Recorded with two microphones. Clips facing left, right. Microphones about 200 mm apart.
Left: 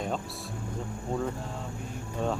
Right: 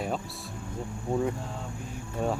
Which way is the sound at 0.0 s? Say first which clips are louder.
Even; 5° right (ahead or behind).